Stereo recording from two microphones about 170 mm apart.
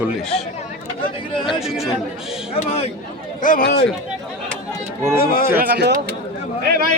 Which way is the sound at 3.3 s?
50° left (ahead or behind).